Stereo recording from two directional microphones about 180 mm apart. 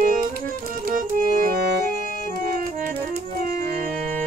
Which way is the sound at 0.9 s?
55° right (ahead or behind).